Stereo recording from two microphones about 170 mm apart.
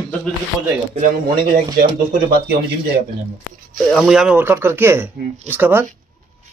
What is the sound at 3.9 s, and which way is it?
Speech, centre (ahead or behind).